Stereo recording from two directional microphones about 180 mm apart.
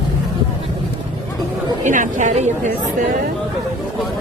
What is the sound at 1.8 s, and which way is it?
Speech, 45° right (ahead or behind).